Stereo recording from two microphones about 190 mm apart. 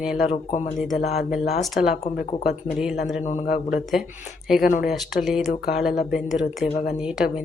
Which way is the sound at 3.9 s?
Centre (ahead or behind).